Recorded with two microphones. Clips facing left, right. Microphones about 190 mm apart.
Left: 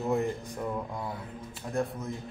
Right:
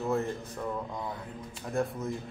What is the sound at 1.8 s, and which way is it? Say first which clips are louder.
Speech: even; centre (ahead or behind).